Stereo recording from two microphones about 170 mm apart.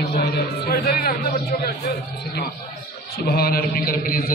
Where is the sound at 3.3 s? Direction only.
65° left (ahead or behind).